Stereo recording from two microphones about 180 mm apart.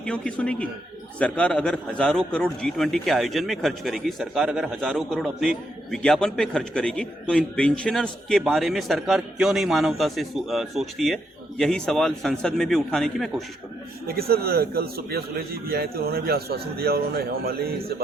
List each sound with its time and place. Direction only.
0.0 s a man's voice: 5° left (ahead or behind)
14.1 s a man's voice: 60° right (ahead or behind)